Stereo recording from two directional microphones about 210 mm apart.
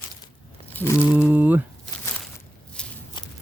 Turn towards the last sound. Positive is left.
turn(degrees=20)  # may be behind; listen again after turning